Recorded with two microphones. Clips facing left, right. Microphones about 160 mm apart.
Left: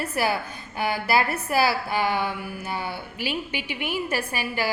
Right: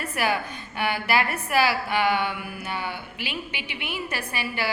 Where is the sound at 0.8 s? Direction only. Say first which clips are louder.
Left 1 dB; 35° left (ahead or behind).